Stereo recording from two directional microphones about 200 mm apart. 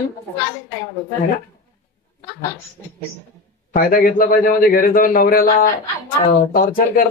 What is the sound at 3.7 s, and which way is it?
A man's voice, 45° left (ahead or behind).